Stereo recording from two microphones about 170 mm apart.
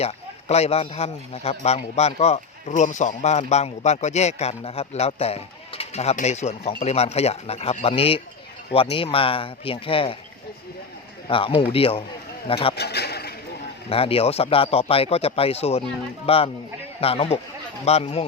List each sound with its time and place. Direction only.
0.0 s a man's voice: 40° left (ahead or behind)
11.3 s a man's voice: 30° left (ahead or behind)
12.7 s a sound: 75° left (ahead or behind)
13.9 s a man's voice: 35° left (ahead or behind)